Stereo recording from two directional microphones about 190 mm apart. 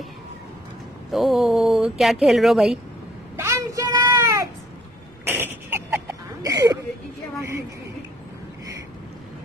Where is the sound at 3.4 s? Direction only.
15° right (ahead or behind).